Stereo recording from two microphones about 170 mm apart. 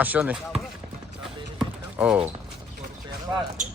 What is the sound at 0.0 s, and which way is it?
Speech, 10° right (ahead or behind).